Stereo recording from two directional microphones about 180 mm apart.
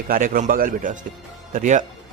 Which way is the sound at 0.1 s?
50° right (ahead or behind).